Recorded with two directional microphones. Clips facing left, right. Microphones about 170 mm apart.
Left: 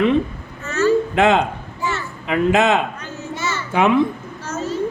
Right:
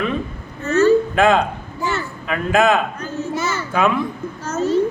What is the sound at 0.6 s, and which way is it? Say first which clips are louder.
Vehicle: right 5 dB; 35° right (ahead or behind).